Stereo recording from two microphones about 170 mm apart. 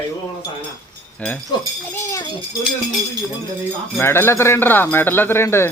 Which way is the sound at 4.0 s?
15° left (ahead or behind).